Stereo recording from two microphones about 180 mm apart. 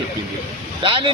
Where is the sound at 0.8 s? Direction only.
30° right (ahead or behind).